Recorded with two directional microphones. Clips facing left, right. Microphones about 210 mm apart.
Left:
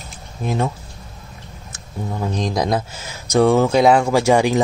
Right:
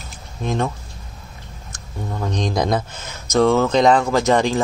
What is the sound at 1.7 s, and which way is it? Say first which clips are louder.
Speech: left 2 dB; 5° left (ahead or behind).